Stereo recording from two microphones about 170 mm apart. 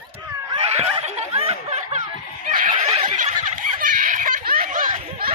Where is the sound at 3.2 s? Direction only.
50° right (ahead or behind).